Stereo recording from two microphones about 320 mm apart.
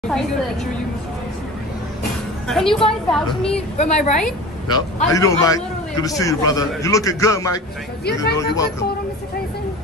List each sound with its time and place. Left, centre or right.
2.4 s a woman's voice: centre
3.7 s a woman's voice: left
8.0 s speech: left
8.4 s a man's voice: centre